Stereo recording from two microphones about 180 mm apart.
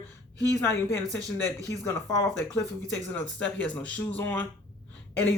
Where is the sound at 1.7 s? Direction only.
15° left (ahead or behind).